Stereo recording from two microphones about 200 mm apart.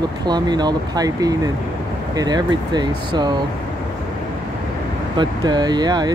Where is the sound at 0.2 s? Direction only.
20° right (ahead or behind).